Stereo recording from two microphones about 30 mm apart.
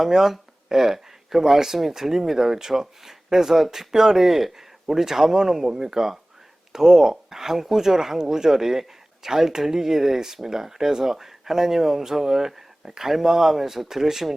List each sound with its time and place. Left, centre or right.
0.0 s speech: centre